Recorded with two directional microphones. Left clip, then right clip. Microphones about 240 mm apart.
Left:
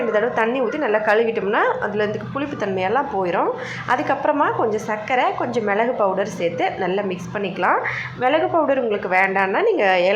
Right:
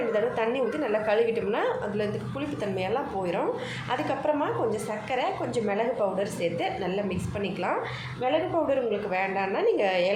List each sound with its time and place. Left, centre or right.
0.1 s a woman's voice: centre
8.2 s a woman's voice: centre